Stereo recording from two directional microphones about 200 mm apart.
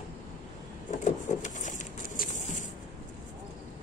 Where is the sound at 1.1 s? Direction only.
40° left (ahead or behind).